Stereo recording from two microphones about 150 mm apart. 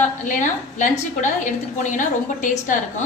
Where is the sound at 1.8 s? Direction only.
55° left (ahead or behind).